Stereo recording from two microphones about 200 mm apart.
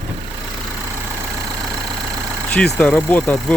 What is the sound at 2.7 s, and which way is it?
Speech, 10° left (ahead or behind).